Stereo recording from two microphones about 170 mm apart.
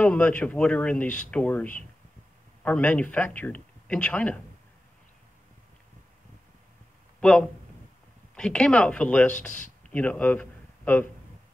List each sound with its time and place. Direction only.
0.0 s speech: 10° left (ahead or behind)
7.2 s speech: 5° left (ahead or behind)